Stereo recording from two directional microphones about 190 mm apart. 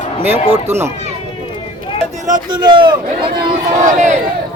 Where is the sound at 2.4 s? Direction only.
25° right (ahead or behind).